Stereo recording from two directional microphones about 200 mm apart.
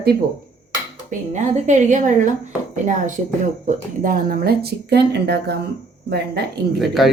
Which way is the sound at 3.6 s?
45° right (ahead or behind).